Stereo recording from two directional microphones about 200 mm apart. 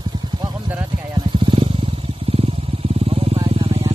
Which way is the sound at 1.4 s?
25° right (ahead or behind).